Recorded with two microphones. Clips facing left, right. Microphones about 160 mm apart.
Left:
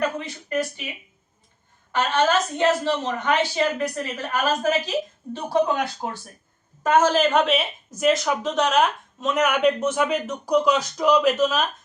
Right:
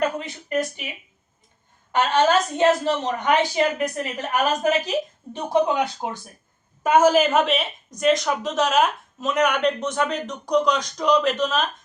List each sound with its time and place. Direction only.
0.0 s speech: 20° right (ahead or behind)
1.9 s a woman's voice: 20° right (ahead or behind); by 11.6 s 5° left (ahead or behind)